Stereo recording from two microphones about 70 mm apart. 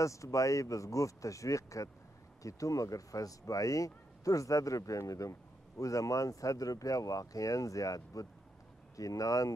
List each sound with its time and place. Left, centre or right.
0.0 s speech: left